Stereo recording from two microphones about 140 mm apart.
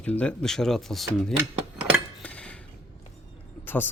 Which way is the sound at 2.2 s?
10° left (ahead or behind).